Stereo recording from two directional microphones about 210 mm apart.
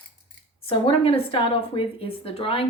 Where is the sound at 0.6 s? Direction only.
25° left (ahead or behind).